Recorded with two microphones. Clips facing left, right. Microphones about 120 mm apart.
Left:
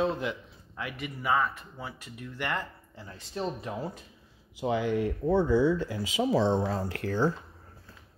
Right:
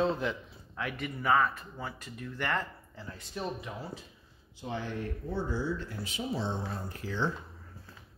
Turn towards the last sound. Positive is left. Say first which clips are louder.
# left 6 dB
turn(degrees=40)  # may be behind; listen again after turning